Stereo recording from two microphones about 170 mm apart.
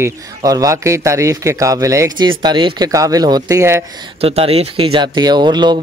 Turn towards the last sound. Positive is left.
turn(degrees=-25)  # may be behind; listen again after turning